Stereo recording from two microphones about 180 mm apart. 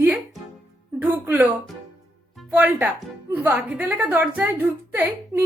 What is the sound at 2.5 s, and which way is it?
A woman's voice, 10° right (ahead or behind).